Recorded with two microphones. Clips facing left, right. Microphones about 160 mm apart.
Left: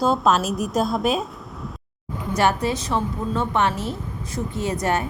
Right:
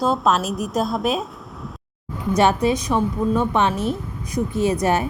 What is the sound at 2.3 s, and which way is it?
A woman's voice, 20° right (ahead or behind).